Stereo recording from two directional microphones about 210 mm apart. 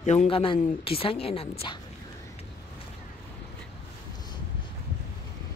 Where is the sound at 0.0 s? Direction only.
35° left (ahead or behind).